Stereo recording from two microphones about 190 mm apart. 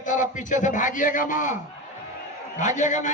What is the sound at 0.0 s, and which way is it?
A man's voice, 40° left (ahead or behind).